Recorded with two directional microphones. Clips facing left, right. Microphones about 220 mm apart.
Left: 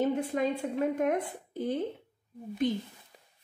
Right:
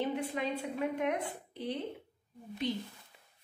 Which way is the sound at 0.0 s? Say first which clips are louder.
Left 6 dB; 45° left (ahead or behind).